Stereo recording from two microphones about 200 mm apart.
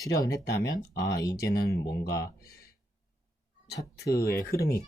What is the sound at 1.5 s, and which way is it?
Speech, 50° left (ahead or behind).